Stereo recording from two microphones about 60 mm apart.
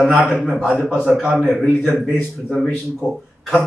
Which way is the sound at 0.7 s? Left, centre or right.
Centre.